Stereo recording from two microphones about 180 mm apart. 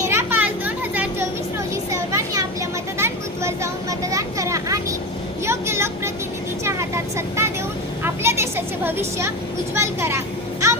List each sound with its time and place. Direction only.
0.0 s children playing: 15° right (ahead or behind)
1.7 s a sound: 15° right (ahead or behind)
3.0 s vehicle: 15° right (ahead or behind)